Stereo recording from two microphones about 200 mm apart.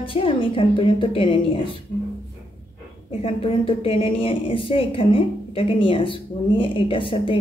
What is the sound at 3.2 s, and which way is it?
A woman's voice, 25° left (ahead or behind).